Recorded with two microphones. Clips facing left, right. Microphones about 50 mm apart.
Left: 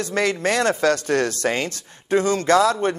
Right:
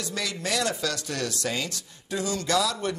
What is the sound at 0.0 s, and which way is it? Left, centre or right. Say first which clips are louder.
Speech: left 10 dB; left.